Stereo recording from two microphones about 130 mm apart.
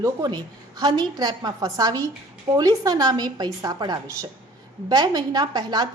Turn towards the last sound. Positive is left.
turn(degrees=-30)  # may be behind; listen again after turning